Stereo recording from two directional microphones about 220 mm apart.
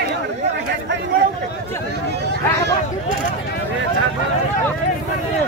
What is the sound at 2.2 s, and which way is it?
Speech, 50° right (ahead or behind).